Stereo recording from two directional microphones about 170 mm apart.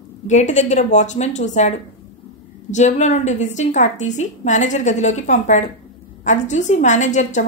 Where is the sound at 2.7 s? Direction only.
45° left (ahead or behind).